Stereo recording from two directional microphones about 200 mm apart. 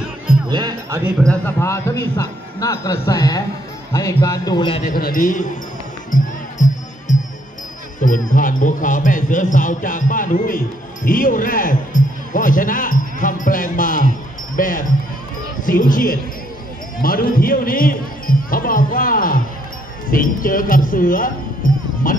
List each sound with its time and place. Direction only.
0.5 s speech: 20° right (ahead or behind)
1.2 s a man's voice: 10° left (ahead or behind); by 4.8 s 25° left (ahead or behind)
4.8 s a man's voice: 45° left (ahead or behind)
6.1 s music: 40° left (ahead or behind)
8.0 s speech: 40° left (ahead or behind)